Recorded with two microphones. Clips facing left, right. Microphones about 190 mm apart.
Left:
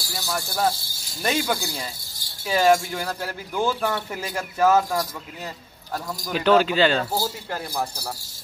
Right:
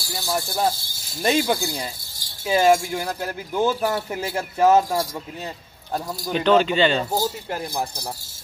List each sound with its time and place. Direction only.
0.1 s speech: 20° right (ahead or behind)
6.3 s speech: 5° left (ahead or behind)
7.0 s speech: 15° right (ahead or behind)